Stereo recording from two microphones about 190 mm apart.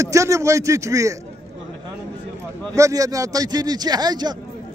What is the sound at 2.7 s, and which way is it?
Speech, 15° right (ahead or behind).